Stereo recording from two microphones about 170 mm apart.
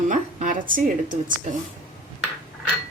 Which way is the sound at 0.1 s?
50° right (ahead or behind).